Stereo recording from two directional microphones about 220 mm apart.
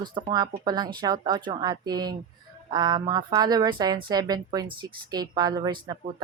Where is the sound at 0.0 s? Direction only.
20° right (ahead or behind).